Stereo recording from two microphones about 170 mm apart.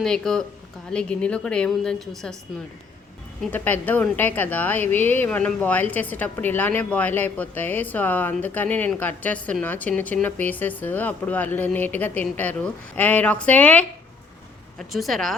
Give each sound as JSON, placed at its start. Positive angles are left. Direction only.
{"t": 0.0, "sound": "a woman's voice", "side_deg": 5}
{"t": 3.4, "sound": "a woman's voice", "side_deg": 10}